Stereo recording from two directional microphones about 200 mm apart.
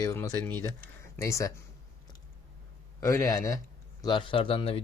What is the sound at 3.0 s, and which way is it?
Speech, 15° left (ahead or behind).